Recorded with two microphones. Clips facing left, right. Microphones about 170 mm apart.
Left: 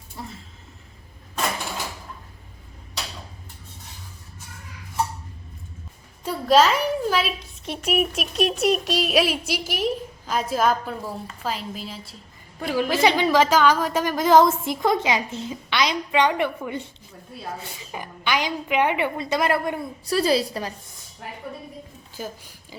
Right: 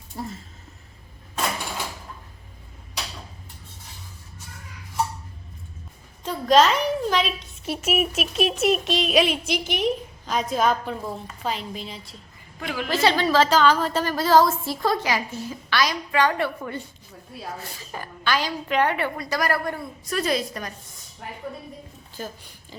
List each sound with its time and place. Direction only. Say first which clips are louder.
6.2 s a woman's voice: even; 5° left (ahead or behind)
7.6 s speech: even; 5° right (ahead or behind)
12.5 s a woman's voice: left 6 dB; 35° left (ahead or behind)
12.9 s a woman's voice: even; 15° left (ahead or behind)
17.9 s a woman's voice: even; 15° left (ahead or behind)
20.1 s a woman's voice: left 4 dB; 30° left (ahead or behind)
22.2 s a woman's voice: left 1 dB; 10° left (ahead or behind)